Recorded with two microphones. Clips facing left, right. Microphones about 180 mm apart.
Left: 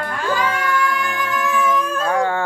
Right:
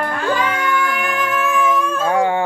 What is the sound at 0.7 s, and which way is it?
Music, 25° right (ahead or behind).